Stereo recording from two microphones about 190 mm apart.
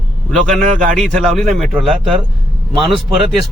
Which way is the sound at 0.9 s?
Centre (ahead or behind).